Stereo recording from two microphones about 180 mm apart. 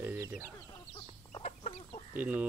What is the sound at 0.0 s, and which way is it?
Chicken, 10° right (ahead or behind).